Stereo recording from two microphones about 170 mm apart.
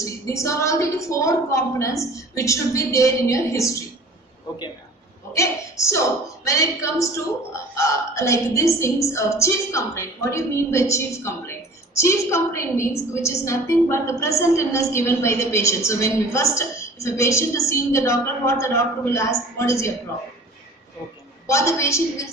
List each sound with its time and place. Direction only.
0.0 s a woman's voice: 20° left (ahead or behind)
5.3 s a woman's voice: 20° left (ahead or behind)
21.5 s a woman's voice: 15° left (ahead or behind)